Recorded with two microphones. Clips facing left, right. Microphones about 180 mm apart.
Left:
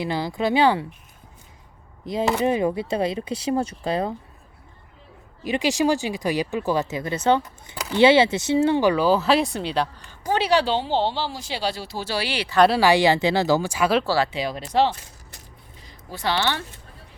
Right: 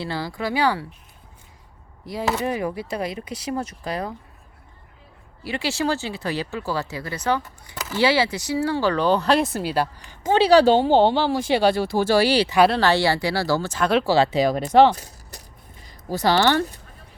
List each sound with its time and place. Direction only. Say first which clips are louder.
0.0 s speech: left 3 dB; 20° left (ahead or behind)
2.2 s speech: left 2 dB; 10° left (ahead or behind)
2.5 s speech: left 4 dB; 25° left (ahead or behind)
5.4 s speech: left 4 dB; 15° left (ahead or behind); by 10.2 s 5° right (ahead or behind)
10.2 s speech: right 6 dB; 30° right (ahead or behind)
12.6 s speech: left 2 dB; 10° left (ahead or behind)
14.0 s speech: right 4 dB; 20° right (ahead or behind)
14.3 s speech: right 8 dB; 40° right (ahead or behind)
14.9 s keys jangling: right 5 dB; 40° right (ahead or behind)
15.8 s speech: right 6 dB; 45° right (ahead or behind)